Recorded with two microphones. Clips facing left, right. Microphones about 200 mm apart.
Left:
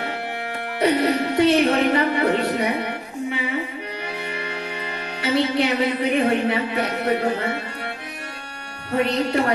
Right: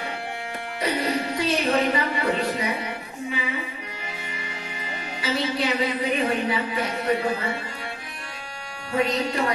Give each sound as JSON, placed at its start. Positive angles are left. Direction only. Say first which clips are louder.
{"t": 0.7, "sound": "a woman's voice", "louder": "left 6 dB", "side_deg": 60}
{"t": 4.0, "sound": "music", "louder": "left 8 dB", "side_deg": 70}
{"t": 8.9, "sound": "a woman's voice", "louder": "left 3 dB", "side_deg": 60}